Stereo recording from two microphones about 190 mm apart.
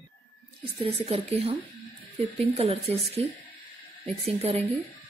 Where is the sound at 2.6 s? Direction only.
35° right (ahead or behind).